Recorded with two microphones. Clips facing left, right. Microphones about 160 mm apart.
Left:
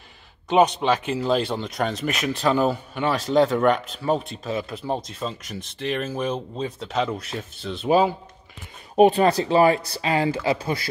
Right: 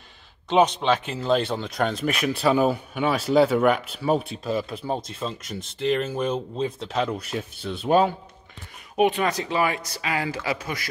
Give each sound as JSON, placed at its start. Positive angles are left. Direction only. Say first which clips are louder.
{"t": 0.5, "sound": "speech", "louder": "left 1 dB", "side_deg": 0}
{"t": 8.9, "sound": "speech", "louder": "left 5 dB", "side_deg": 35}